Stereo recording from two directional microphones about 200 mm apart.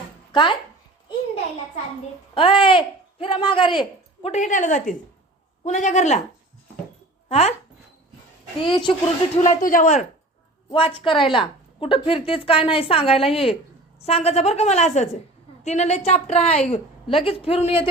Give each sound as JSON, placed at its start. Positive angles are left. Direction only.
{"t": 2.3, "sound": "a woman's voice", "side_deg": 25}
{"t": 7.3, "sound": "speech", "side_deg": 30}
{"t": 8.6, "sound": "a woman's voice", "side_deg": 25}
{"t": 10.7, "sound": "a woman's voice", "side_deg": 25}